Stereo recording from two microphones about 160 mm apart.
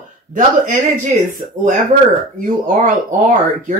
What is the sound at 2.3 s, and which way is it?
Speech, 55° right (ahead or behind).